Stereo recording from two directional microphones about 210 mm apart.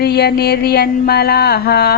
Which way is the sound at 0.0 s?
50° left (ahead or behind).